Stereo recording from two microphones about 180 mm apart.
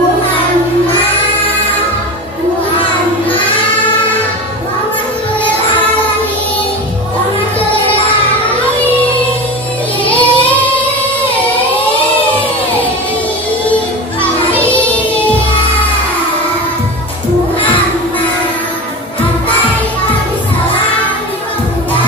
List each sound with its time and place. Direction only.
10.0 s child singing: 10° left (ahead or behind)